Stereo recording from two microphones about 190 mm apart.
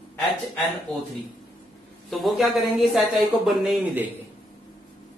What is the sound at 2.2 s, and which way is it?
A woman's voice, centre (ahead or behind).